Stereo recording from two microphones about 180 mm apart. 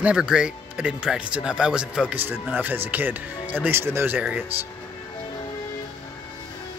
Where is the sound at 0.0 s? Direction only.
5° right (ahead or behind).